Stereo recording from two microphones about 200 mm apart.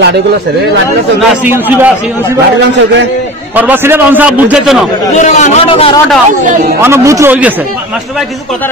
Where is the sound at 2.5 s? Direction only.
60° right (ahead or behind).